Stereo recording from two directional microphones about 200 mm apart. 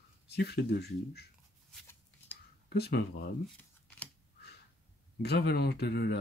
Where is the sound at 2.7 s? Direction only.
55° left (ahead or behind).